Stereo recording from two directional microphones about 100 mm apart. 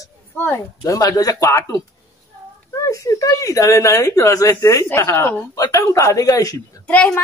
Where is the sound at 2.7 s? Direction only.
35° left (ahead or behind).